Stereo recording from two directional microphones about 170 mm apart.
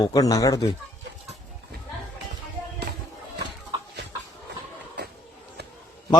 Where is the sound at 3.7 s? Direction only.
25° right (ahead or behind).